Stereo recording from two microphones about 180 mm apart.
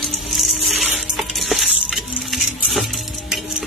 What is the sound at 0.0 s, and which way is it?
Music, centre (ahead or behind).